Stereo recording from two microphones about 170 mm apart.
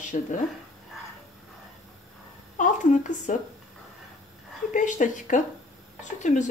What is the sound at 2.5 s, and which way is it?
Speech, 45° left (ahead or behind).